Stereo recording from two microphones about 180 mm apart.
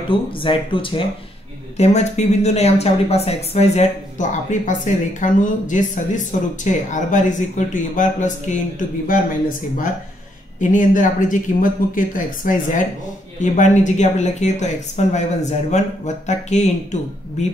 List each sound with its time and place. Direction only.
0.1 s speech: 30° left (ahead or behind)